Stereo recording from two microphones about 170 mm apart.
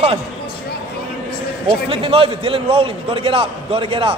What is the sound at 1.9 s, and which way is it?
A man's voice, 30° right (ahead or behind).